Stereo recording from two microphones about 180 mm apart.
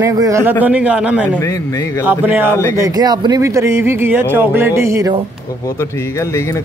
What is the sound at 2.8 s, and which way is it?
Speech, 20° right (ahead or behind).